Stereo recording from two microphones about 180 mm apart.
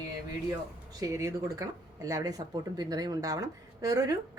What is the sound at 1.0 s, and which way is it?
Speech, 15° right (ahead or behind).